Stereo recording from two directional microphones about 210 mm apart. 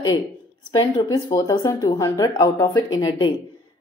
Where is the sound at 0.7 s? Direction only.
15° left (ahead or behind).